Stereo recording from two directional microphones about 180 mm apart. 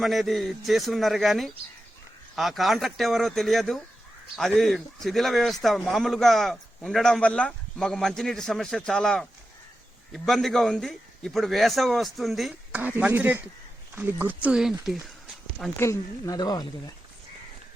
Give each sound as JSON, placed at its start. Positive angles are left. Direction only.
{"t": 0.0, "sound": "a man's voice", "side_deg": 0}
{"t": 15.8, "sound": "speech", "side_deg": 15}